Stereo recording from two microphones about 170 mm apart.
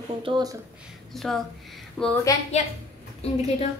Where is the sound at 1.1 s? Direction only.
Centre (ahead or behind).